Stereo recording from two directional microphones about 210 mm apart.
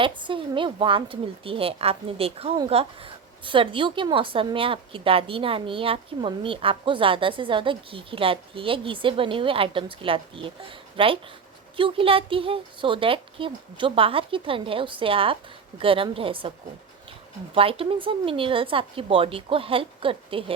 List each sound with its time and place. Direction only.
0.0 s a woman's voice: 25° right (ahead or behind)
17.5 s a woman's voice: 25° right (ahead or behind)